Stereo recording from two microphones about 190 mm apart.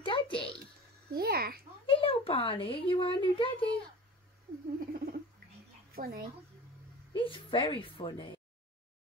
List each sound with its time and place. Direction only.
0.0 s music: 25° left (ahead or behind)
1.1 s a sound: 55° right (ahead or behind)
1.9 s a child's voice: 30° left (ahead or behind)
4.7 s rodents: 50° right (ahead or behind)
5.9 s a child's voice: 50° right (ahead or behind)
7.2 s a woman's voice: 25° left (ahead or behind)